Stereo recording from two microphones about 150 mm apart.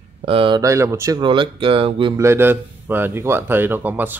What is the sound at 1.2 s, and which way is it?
Speech, 35° right (ahead or behind).